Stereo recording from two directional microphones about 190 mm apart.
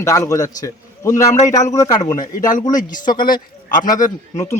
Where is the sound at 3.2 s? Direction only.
50° left (ahead or behind).